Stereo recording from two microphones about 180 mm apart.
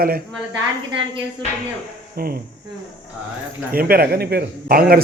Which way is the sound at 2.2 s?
55° right (ahead or behind).